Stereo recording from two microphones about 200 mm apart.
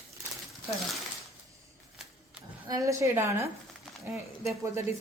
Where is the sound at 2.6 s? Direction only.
15° right (ahead or behind).